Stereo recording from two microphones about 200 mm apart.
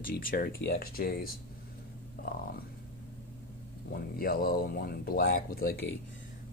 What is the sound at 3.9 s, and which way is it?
Speech, 50° left (ahead or behind).